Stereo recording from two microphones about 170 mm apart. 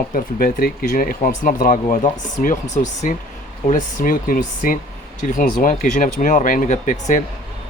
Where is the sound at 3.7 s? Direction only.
50° left (ahead or behind).